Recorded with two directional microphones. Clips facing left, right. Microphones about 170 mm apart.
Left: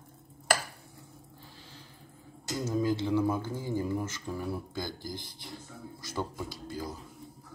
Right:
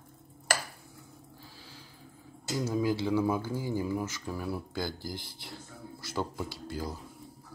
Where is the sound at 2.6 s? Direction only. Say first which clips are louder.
Even; 10° right (ahead or behind).